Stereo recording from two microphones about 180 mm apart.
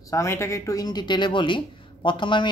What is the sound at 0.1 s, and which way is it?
Speech, 15° left (ahead or behind).